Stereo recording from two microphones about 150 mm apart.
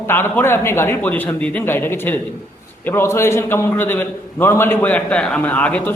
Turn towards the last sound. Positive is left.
turn(degrees=10)  # may be behind; listen again after turning